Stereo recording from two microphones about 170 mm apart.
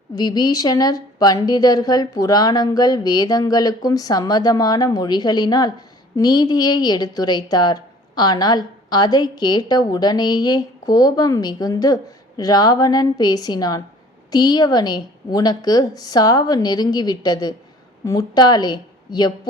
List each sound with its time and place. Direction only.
0.2 s a woman's voice: 25° left (ahead or behind)